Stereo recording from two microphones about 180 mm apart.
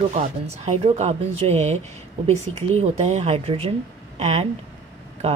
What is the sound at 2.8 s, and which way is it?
Speech, 40° right (ahead or behind).